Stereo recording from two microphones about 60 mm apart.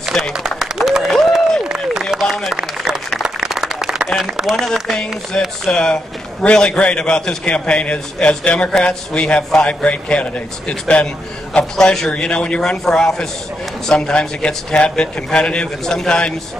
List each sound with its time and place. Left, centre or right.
0.1 s a man's voice: centre
0.5 s applause: centre
1.7 s a sound: centre
3.2 s applause: centre
4.2 s speech: centre
4.8 s a man's voice: centre
11.7 s a man's voice: centre